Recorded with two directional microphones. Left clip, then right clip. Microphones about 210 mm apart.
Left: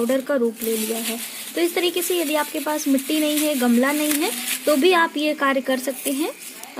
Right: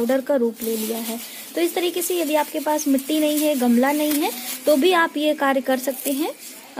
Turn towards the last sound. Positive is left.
turn(degrees=0)  # may be behind; listen again after turning